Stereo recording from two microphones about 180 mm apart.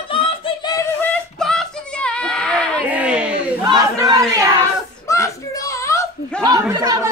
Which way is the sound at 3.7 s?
20° right (ahead or behind).